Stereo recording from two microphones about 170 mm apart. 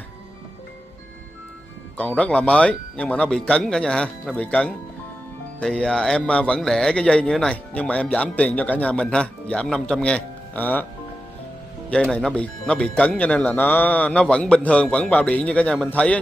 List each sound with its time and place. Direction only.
2.0 s speech: 5° left (ahead or behind)
11.9 s speech: 5° left (ahead or behind)